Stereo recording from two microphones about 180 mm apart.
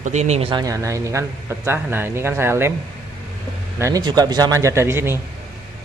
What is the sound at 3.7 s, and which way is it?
Speech, 15° right (ahead or behind).